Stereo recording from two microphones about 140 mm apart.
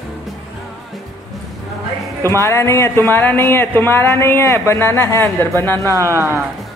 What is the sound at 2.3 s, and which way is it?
Music, 20° left (ahead or behind).